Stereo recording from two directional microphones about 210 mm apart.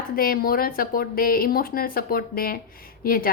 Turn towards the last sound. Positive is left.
turn(degrees=45)  # may be behind; listen again after turning